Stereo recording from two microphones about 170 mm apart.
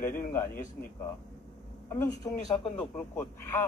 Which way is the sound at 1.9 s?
20° left (ahead or behind).